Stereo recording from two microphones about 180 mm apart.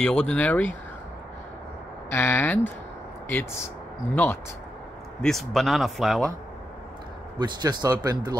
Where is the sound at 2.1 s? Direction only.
10° left (ahead or behind).